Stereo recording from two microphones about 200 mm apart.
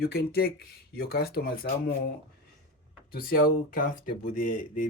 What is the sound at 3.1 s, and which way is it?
Speech, 45° left (ahead or behind).